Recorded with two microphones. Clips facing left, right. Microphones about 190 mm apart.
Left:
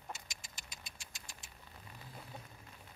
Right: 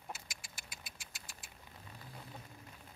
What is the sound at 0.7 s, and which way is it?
Vehicle, 5° right (ahead or behind).